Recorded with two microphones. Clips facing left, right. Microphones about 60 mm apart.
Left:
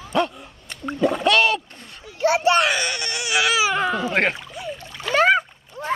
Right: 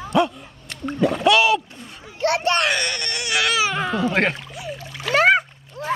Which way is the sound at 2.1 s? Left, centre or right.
Centre.